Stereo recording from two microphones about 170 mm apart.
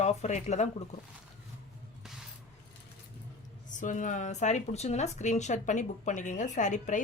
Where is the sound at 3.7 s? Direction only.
50° left (ahead or behind).